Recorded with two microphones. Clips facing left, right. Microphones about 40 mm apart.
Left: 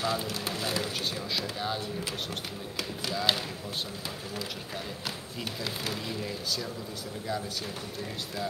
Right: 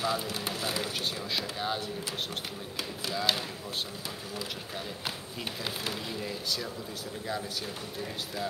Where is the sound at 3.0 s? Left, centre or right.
Centre.